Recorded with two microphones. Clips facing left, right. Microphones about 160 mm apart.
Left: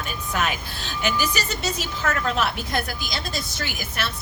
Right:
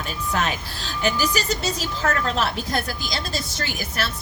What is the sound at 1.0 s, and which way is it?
Speech, 35° right (ahead or behind).